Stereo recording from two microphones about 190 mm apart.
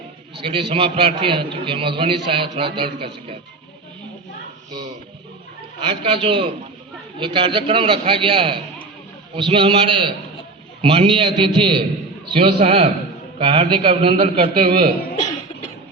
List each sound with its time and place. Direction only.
0.3 s a man's voice: 30° right (ahead or behind)
5.9 s a man's voice: 30° right (ahead or behind)